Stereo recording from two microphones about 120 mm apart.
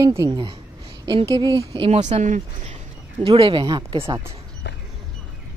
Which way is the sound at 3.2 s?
50° right (ahead or behind).